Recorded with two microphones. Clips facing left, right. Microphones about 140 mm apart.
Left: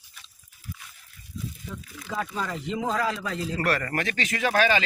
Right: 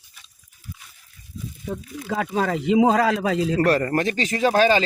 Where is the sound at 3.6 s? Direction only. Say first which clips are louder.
Right 5 dB; 35° right (ahead or behind).